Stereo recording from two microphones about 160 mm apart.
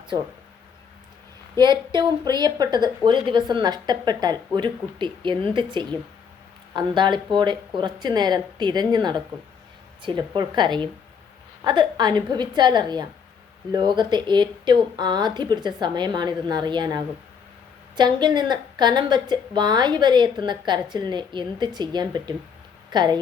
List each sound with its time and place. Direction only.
1.5 s a woman's voice: 30° right (ahead or behind)
6.7 s a woman's voice: 30° right (ahead or behind)